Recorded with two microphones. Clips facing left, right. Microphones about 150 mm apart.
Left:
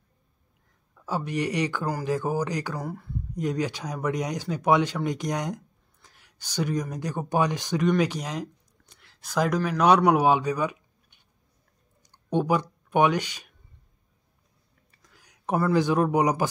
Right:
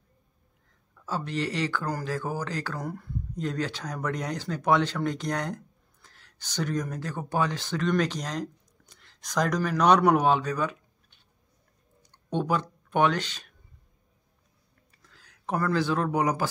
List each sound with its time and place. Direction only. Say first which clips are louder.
0.9 s speech: left 2 dB; 15° left (ahead or behind)
2.8 s speech: left 1 dB; centre (ahead or behind)
3.3 s a man's voice: left 3 dB; 15° left (ahead or behind)
15.0 s speech: left 1 dB; 15° left (ahead or behind)